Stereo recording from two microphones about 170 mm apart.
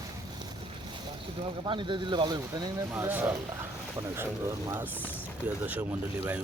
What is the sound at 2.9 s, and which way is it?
Speech, 10° right (ahead or behind).